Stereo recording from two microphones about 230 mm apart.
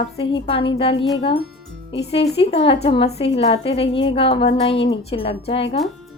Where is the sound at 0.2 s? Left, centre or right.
Left.